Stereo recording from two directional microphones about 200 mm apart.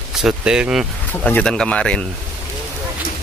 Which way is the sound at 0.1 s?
5° right (ahead or behind).